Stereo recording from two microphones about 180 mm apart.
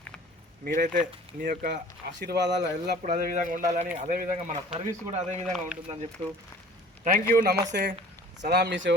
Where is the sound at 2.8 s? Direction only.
50° right (ahead or behind).